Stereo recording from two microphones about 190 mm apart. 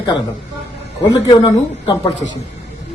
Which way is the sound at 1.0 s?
20° left (ahead or behind).